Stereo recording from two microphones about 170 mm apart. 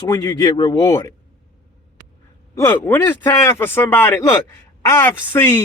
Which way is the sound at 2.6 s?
15° left (ahead or behind).